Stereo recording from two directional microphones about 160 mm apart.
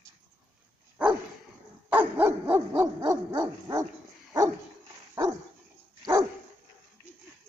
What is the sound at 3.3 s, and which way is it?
Dog, 25° right (ahead or behind).